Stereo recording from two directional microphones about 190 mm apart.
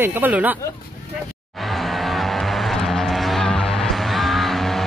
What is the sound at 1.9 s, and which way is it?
Music, centre (ahead or behind).